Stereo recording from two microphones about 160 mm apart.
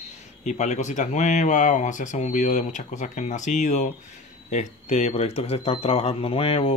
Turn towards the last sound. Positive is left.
turn(degrees=35)  # may be behind; listen again after turning